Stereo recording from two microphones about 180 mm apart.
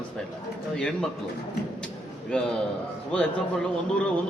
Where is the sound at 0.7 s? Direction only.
5° left (ahead or behind).